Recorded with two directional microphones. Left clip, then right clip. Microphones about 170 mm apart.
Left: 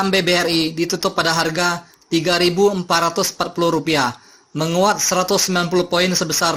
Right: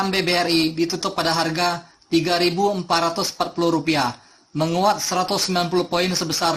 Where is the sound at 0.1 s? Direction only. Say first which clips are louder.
Left 3 dB; 30° left (ahead or behind).